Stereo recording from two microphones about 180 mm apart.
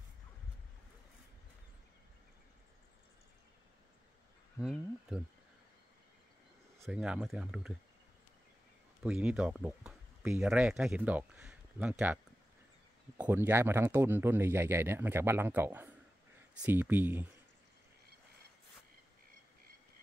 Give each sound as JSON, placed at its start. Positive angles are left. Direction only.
{"t": 4.6, "sound": "speech", "side_deg": -5}
{"t": 6.8, "sound": "speech", "side_deg": -5}
{"t": 9.0, "sound": "speech", "side_deg": -5}
{"t": 13.2, "sound": "speech", "side_deg": -10}